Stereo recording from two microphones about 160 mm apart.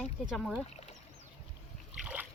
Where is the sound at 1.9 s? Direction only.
5° right (ahead or behind).